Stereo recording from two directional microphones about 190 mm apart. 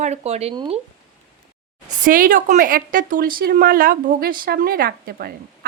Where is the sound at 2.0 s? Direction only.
45° right (ahead or behind).